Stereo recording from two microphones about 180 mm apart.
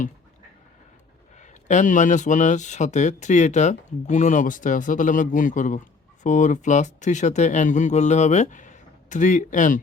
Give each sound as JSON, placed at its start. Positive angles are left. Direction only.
{"t": 1.4, "sound": "speech", "side_deg": 40}